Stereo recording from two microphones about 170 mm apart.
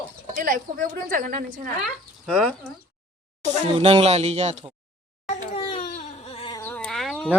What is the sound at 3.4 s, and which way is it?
Speech, 45° right (ahead or behind).